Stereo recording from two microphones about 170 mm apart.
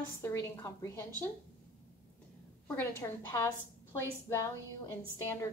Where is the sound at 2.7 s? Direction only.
15° left (ahead or behind).